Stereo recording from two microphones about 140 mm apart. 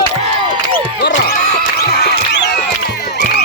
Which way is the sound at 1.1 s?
80° left.